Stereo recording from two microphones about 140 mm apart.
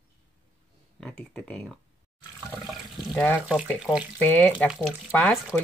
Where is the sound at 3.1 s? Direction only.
10° left (ahead or behind).